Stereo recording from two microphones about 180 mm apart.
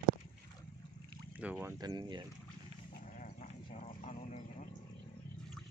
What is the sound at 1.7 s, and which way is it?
Speech, 25° right (ahead or behind).